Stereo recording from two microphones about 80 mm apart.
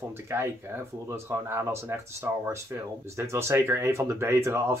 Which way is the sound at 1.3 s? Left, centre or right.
Right.